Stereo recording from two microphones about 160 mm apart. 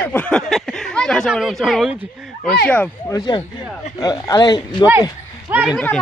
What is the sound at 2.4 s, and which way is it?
Speech, 10° left (ahead or behind).